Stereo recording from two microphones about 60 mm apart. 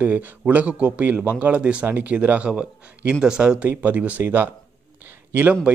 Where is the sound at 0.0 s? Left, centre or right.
Right.